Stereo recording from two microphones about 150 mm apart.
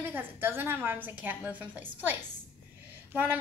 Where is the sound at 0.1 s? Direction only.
15° right (ahead or behind).